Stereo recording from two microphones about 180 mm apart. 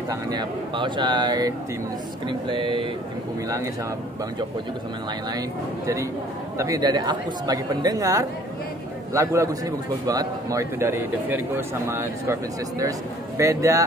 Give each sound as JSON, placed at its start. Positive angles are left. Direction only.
{"t": 0.1, "sound": "a woman's voice", "side_deg": -25}
{"t": 6.6, "sound": "a woman's voice", "side_deg": -20}